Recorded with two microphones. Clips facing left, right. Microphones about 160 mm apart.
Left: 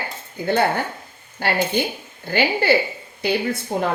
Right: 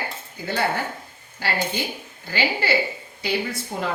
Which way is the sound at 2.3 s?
55° left (ahead or behind).